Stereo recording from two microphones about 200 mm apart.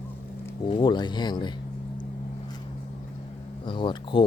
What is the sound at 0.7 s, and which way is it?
Speech, 25° left (ahead or behind).